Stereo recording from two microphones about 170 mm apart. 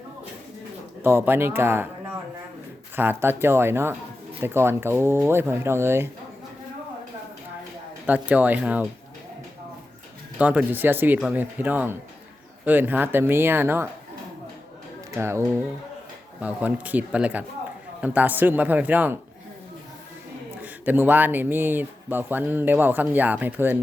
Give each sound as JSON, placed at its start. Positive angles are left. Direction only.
{"t": 1.0, "sound": "speech", "side_deg": -10}
{"t": 2.9, "sound": "speech", "side_deg": -10}
{"t": 8.0, "sound": "speech", "side_deg": -10}
{"t": 10.3, "sound": "speech", "side_deg": -10}
{"t": 15.1, "sound": "speech", "side_deg": -15}
{"t": 20.6, "sound": "speech", "side_deg": -10}